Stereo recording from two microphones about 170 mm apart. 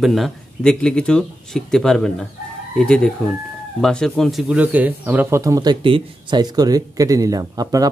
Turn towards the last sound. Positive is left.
turn(degrees=-20)  # may be behind; listen again after turning